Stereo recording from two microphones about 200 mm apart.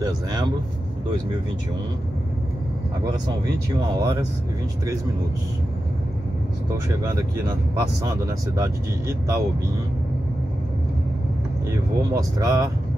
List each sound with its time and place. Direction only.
0.0 s speech: 20° right (ahead or behind)
3.8 s speech: 15° right (ahead or behind)
7.0 s speech: 20° right (ahead or behind)
12.1 s speech: 15° right (ahead or behind)